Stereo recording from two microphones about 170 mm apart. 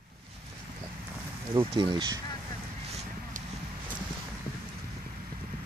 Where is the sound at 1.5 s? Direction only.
30° right (ahead or behind).